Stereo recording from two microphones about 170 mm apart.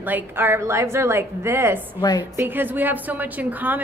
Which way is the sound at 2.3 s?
10° right (ahead or behind).